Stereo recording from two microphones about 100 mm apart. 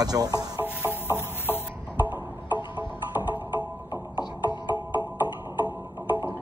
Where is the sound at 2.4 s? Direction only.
55° left (ahead or behind).